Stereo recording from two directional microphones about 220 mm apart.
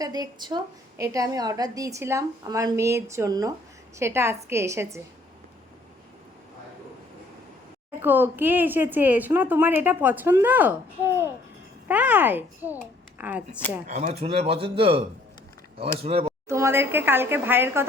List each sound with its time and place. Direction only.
0.0 s a woman's voice: 20° right (ahead or behind)
7.9 s a woman's voice: 10° right (ahead or behind)
13.8 s speech: 30° right (ahead or behind)
16.5 s a woman's voice: 10° right (ahead or behind)